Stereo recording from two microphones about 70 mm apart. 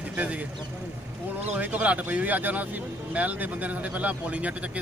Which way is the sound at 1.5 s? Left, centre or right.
Right.